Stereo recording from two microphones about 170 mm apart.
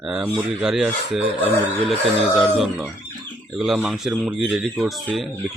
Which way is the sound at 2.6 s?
Centre (ahead or behind).